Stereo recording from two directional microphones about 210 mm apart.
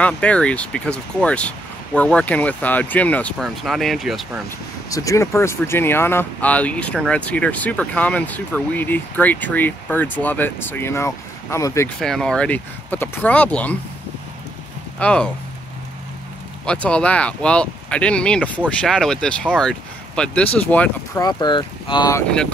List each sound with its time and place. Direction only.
0.0 s speech: 5° left (ahead or behind)
4.8 s speech: 15° left (ahead or behind)
12.0 s speech: 5° left (ahead or behind)
15.0 s speech: 5° left (ahead or behind)
16.6 s speech: 5° left (ahead or behind)